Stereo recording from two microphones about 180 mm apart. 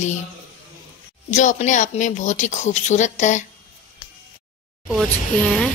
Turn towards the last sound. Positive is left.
turn(degrees=5)  # may be behind; listen again after turning